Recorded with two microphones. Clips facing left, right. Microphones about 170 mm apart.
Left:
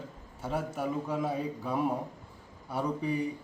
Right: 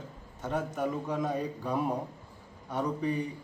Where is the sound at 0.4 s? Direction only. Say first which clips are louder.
Right 1 dB; 5° left (ahead or behind).